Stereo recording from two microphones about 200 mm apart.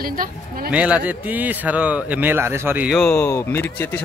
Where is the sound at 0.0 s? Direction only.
45° right (ahead or behind).